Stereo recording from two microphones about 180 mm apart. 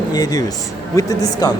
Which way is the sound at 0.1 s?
20° left (ahead or behind).